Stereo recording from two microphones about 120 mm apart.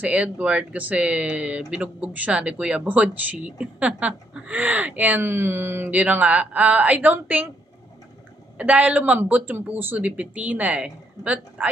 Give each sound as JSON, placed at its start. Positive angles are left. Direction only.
{"t": 0.0, "sound": "speech", "side_deg": -10}
{"t": 8.5, "sound": "speech", "side_deg": -10}